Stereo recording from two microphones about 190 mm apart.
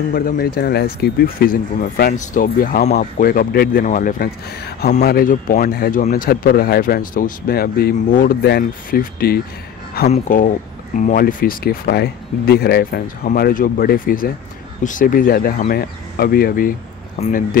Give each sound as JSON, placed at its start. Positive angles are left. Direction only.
{"t": 0.1, "sound": "speech", "side_deg": 55}
{"t": 10.0, "sound": "speech", "side_deg": 35}
{"t": 17.2, "sound": "speech", "side_deg": 35}